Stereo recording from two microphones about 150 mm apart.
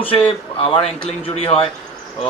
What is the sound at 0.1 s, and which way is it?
A man's voice, 35° left (ahead or behind).